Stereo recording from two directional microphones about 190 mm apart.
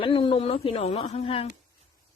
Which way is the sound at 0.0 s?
25° left (ahead or behind).